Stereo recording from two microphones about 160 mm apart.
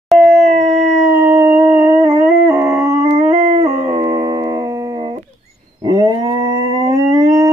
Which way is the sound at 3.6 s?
20° right (ahead or behind).